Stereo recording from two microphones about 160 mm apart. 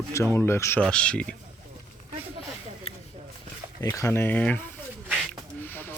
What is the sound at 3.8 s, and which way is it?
Speech, 20° left (ahead or behind).